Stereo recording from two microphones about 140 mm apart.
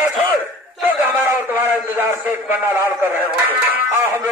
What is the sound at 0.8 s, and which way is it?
A man's voice, 15° right (ahead or behind).